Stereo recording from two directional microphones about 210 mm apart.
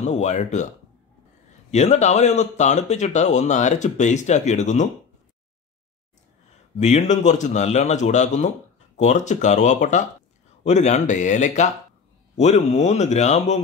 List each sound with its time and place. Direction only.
0.0 s speech: 35° left (ahead or behind)
1.7 s speech: 30° left (ahead or behind)
6.8 s speech: 35° left (ahead or behind)